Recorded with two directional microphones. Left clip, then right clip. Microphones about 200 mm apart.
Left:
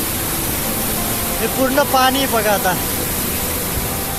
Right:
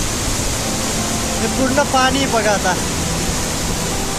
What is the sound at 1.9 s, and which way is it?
Speech, 15° left (ahead or behind).